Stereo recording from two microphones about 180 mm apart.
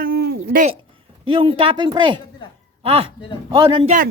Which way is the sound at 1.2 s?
30° right (ahead or behind).